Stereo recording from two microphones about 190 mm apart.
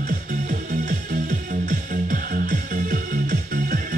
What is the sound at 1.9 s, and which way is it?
Music, 45° right (ahead or behind).